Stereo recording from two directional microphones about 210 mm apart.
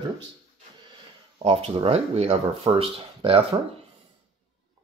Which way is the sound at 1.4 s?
25° right (ahead or behind).